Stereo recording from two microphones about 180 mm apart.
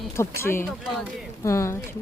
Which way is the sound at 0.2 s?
15° left (ahead or behind).